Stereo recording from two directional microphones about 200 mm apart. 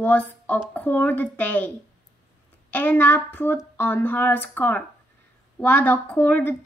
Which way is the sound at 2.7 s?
10° left (ahead or behind).